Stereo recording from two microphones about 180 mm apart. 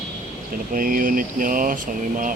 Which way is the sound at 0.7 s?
50° right (ahead or behind).